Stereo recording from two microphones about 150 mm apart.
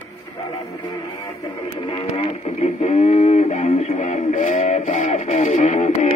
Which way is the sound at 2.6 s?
45° left (ahead or behind).